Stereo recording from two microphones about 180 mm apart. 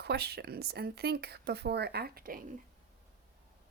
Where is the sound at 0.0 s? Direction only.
65° right (ahead or behind).